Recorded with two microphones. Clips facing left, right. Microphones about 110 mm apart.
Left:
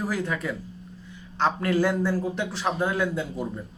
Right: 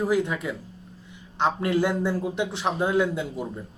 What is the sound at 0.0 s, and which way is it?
Speech, 20° right (ahead or behind).